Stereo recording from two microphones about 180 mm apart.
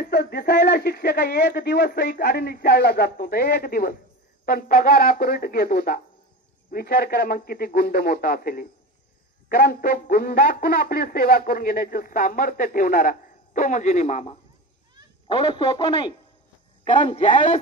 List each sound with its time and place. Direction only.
0.1 s speech: 60° left (ahead or behind); by 14.3 s 40° left (ahead or behind)
15.3 s a man's voice: 25° left (ahead or behind); by 17.6 s 40° left (ahead or behind)